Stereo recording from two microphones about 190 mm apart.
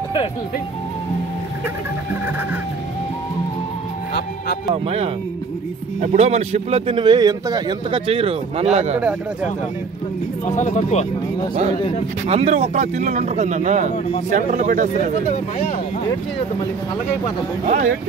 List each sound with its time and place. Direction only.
4.8 s a man's voice: 30° right (ahead or behind)
10.4 s speech: 40° left (ahead or behind)
12.3 s speech: 35° right (ahead or behind)
17.6 s speech: 40° right (ahead or behind)